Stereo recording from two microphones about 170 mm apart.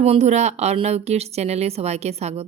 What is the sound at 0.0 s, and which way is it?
A woman's voice, 40° right (ahead or behind).